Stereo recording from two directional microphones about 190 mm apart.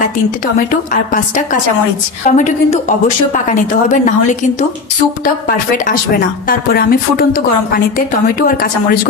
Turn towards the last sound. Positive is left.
turn(degrees=50)  # may be behind; listen again after turning